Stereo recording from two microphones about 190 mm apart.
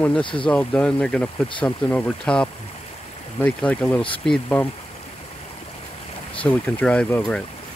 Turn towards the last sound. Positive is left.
turn(degrees=10)  # may be behind; listen again after turning